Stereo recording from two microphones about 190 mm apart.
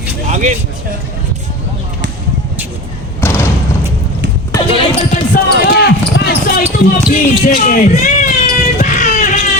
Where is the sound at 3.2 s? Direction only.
15° left (ahead or behind).